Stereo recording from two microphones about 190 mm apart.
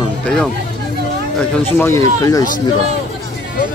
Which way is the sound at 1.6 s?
10° left (ahead or behind).